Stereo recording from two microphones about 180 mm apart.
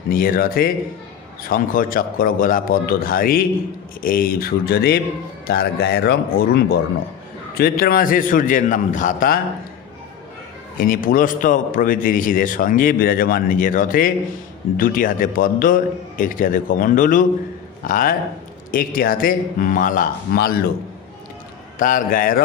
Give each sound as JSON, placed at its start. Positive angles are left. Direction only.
{"t": 0.1, "sound": "a man's voice", "side_deg": 55}
{"t": 10.8, "sound": "a man's voice", "side_deg": 50}
{"t": 21.8, "sound": "a man's voice", "side_deg": 50}